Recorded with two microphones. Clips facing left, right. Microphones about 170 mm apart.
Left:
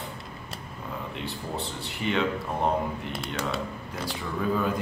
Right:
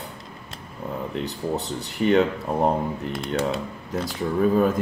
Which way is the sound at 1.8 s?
40° right (ahead or behind).